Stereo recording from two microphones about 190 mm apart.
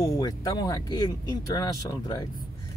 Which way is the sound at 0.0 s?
20° left (ahead or behind).